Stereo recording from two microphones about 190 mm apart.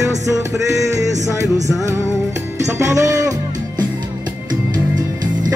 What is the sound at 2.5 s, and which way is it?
Music, 15° right (ahead or behind).